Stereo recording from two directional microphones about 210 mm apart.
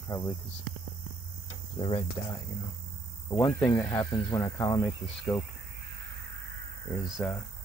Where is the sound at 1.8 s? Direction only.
25° left (ahead or behind).